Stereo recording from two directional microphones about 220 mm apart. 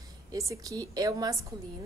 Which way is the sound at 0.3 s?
15° right (ahead or behind).